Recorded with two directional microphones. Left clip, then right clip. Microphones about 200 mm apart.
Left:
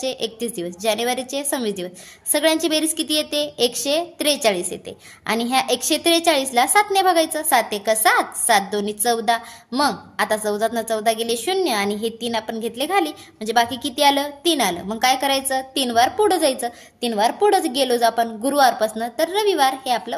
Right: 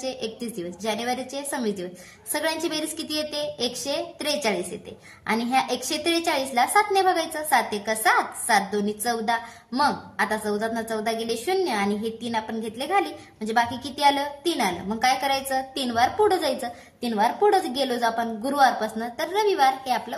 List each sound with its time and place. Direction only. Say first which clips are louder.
0.0 s a woman's voice: left 6 dB; 45° left (ahead or behind)